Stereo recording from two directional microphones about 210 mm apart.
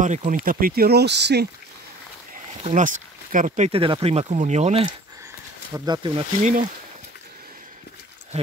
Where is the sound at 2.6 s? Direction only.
40° right (ahead or behind).